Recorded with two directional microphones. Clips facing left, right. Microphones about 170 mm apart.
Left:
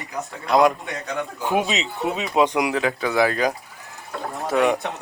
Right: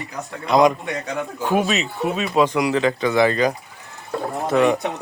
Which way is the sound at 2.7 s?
5° left (ahead or behind).